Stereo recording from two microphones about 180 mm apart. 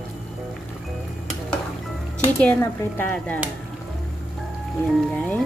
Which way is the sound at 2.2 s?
10° left (ahead or behind).